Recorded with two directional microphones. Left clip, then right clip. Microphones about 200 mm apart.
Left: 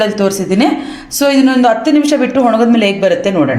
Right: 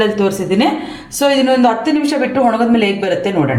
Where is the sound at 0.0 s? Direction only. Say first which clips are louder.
Left 2 dB; 30° left (ahead or behind).